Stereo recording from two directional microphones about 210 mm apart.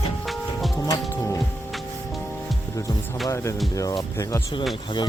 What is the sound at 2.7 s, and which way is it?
Music, 15° left (ahead or behind).